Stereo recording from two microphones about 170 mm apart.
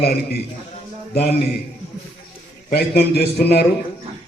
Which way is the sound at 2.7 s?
70° left (ahead or behind).